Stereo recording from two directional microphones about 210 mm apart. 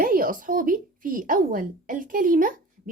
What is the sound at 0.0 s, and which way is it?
Speech, 40° right (ahead or behind).